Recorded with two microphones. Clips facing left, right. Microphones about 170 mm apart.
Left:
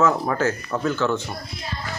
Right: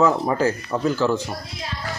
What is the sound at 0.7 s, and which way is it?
Speech, 30° right (ahead or behind).